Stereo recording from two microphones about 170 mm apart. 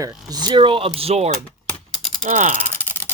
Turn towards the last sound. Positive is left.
turn(degrees=10)  # may be behind; listen again after turning